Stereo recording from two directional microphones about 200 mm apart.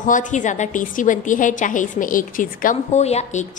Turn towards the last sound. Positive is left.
turn(degrees=35)  # may be behind; listen again after turning